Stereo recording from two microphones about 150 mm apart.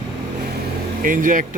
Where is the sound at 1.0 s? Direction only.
60° right (ahead or behind).